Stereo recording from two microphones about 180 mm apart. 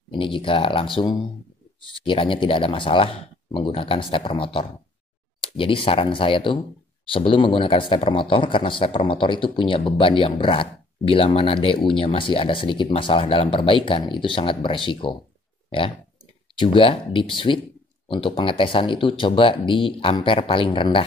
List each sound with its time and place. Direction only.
0.1 s speech: 30° left (ahead or behind)
16.5 s speech: 30° left (ahead or behind)